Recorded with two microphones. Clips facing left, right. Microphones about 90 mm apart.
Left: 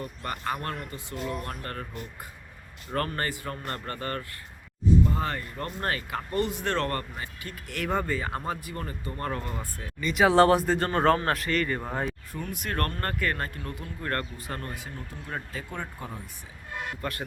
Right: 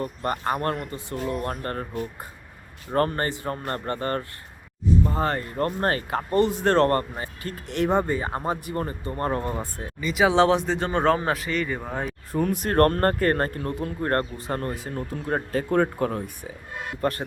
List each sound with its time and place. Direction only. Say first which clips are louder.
0.0 s speech: right 6 dB; 40° right (ahead or behind)
10.0 s speech: right 1 dB; centre (ahead or behind)
12.3 s speech: right 10 dB; 35° right (ahead or behind)
14.9 s speech: right 10 dB; 50° right (ahead or behind)
17.0 s speech: right 12 dB; 35° right (ahead or behind)